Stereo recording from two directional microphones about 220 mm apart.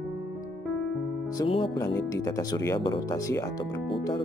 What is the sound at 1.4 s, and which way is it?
Speech, 20° left (ahead or behind).